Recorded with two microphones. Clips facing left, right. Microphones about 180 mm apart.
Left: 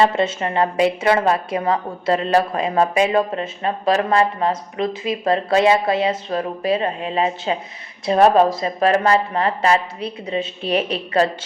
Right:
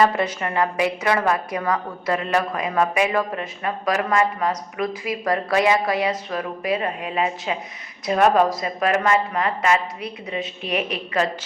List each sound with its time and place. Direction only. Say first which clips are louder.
0.0 s a woman's voice: left 2 dB; 25° left (ahead or behind)